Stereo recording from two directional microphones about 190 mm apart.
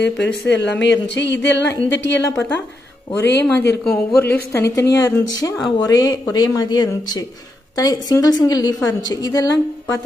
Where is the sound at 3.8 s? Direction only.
5° left (ahead or behind).